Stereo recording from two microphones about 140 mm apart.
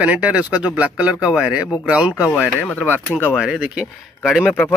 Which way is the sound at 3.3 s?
5° right (ahead or behind).